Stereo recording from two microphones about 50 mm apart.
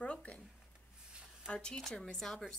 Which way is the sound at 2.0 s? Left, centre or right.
Centre.